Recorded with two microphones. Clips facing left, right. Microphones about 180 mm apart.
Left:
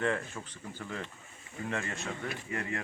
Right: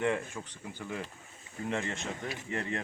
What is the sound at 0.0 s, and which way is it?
Speech, 15° right (ahead or behind).